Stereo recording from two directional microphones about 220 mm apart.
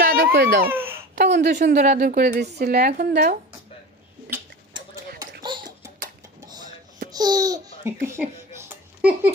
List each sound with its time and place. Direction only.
0.0 s baby cry: 40° right (ahead or behind)
0.7 s babbling: 10° right (ahead or behind)
1.1 s a woman's voice: 50° right (ahead or behind)
7.1 s speech: 15° right (ahead or behind)
8.1 s a sound: 10° right (ahead or behind)